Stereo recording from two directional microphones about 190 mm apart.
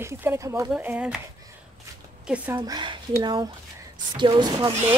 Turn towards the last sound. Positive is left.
turn(degrees=-20)  # may be behind; listen again after turning